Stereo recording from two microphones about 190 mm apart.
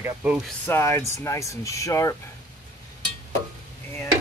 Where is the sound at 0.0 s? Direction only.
5° right (ahead or behind).